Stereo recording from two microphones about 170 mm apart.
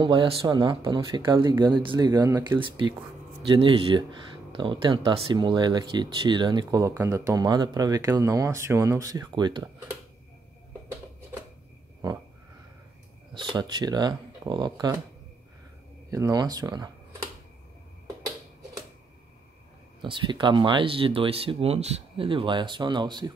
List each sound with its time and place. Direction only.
0.0 s speech: 30° right (ahead or behind)
13.3 s speech: 30° right (ahead or behind)
16.1 s speech: 20° right (ahead or behind)
20.0 s speech: 30° right (ahead or behind)